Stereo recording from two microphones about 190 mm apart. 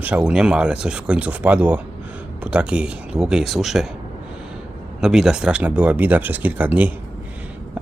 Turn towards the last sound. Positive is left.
turn(degrees=-10)  # may be behind; listen again after turning